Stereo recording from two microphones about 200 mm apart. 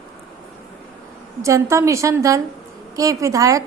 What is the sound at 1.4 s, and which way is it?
A woman's voice, 15° right (ahead or behind).